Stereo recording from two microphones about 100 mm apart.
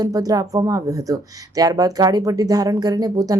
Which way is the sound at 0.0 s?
35° right (ahead or behind).